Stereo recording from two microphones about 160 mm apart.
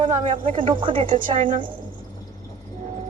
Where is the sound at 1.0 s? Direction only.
55° right (ahead or behind).